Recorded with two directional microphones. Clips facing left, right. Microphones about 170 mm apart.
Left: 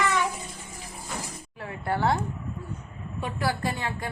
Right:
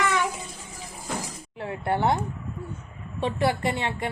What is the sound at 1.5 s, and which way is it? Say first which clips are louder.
Speech: right 3 dB; 25° right (ahead or behind).